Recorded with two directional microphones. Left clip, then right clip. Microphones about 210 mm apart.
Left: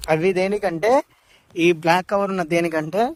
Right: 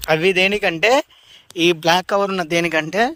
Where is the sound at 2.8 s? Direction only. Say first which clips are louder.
Right 2 dB; 35° left (ahead or behind).